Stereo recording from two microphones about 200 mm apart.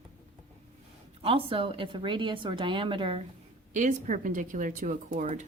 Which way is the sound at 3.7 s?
40° right (ahead or behind).